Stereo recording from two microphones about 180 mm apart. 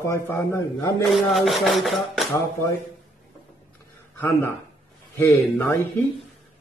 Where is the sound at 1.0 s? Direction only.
Centre (ahead or behind).